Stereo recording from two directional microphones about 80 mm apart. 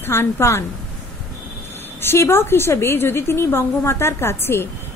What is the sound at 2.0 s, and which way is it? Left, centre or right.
A woman's voice, left.